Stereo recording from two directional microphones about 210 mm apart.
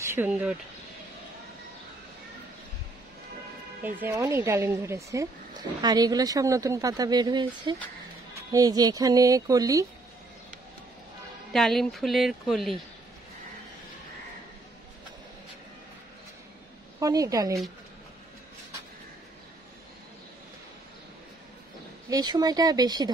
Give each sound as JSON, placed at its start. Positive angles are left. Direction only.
{"t": 0.0, "sound": "speech", "side_deg": -10}
{"t": 3.8, "sound": "speech", "side_deg": -10}
{"t": 11.5, "sound": "speech", "side_deg": 0}
{"t": 17.0, "sound": "speech", "side_deg": -15}
{"t": 22.1, "sound": "speech", "side_deg": -20}